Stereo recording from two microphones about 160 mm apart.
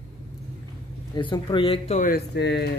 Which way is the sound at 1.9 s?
70° left (ahead or behind).